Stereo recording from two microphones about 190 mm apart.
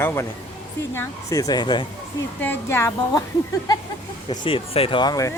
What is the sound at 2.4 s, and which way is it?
Speech, 10° left (ahead or behind).